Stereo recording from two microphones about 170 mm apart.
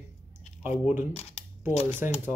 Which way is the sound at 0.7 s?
10° right (ahead or behind).